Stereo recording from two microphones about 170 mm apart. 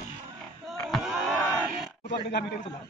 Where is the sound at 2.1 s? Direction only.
90° left.